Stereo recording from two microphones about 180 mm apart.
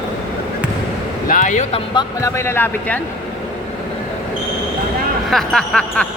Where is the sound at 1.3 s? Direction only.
45° left (ahead or behind).